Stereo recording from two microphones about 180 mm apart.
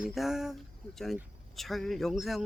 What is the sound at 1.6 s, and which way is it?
Speech, centre (ahead or behind).